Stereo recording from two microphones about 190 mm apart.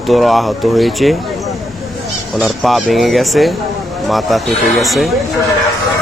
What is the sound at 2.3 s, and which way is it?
Speech, centre (ahead or behind).